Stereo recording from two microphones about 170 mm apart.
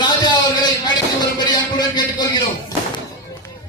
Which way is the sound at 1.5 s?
25° left (ahead or behind).